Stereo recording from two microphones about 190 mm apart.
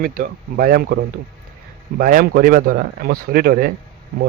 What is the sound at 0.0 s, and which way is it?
Speech, 50° right (ahead or behind).